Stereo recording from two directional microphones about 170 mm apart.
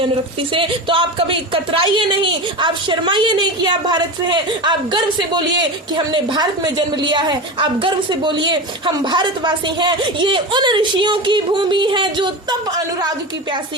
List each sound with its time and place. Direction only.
0.5 s speech: 30° right (ahead or behind)